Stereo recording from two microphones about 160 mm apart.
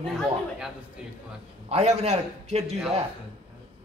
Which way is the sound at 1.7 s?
45° right (ahead or behind).